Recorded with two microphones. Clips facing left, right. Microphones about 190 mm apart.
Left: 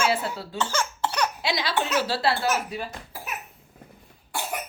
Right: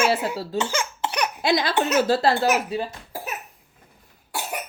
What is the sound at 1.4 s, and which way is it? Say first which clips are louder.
Speech: right 5 dB; 50° right (ahead or behind).